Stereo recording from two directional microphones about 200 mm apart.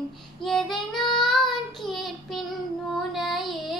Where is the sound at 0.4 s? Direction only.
Centre (ahead or behind).